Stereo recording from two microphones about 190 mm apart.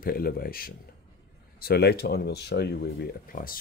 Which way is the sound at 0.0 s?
50° left (ahead or behind).